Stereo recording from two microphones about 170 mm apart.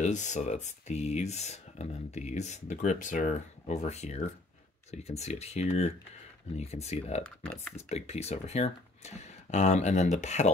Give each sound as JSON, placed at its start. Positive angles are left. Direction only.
{"t": 0.0, "sound": "speech", "side_deg": 45}